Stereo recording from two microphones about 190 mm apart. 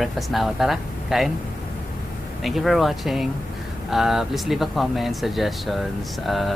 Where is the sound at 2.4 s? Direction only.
Centre (ahead or behind).